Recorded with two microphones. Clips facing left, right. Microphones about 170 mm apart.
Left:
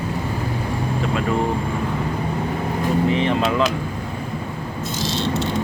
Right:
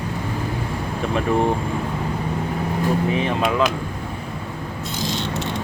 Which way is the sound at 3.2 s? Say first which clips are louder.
Left 1 dB; 10° right (ahead or behind).